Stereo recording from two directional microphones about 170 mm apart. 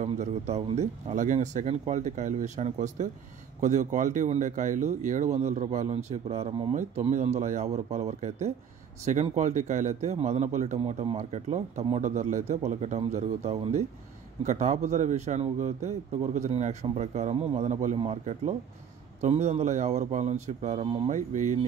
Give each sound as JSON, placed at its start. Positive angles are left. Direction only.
{"t": 0.0, "sound": "a man's voice", "side_deg": -40}
{"t": 21.1, "sound": "speech", "side_deg": -45}